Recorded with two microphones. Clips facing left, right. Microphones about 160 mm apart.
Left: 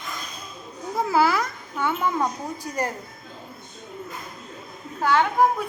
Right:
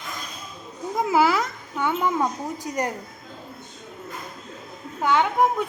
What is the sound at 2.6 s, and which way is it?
Speech, 15° right (ahead or behind).